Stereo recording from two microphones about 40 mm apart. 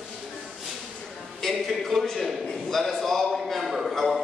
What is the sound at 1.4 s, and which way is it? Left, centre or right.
A man's voice, centre.